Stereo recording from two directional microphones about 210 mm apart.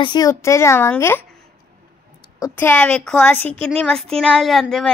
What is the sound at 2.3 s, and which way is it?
A woman's voice, 15° left (ahead or behind).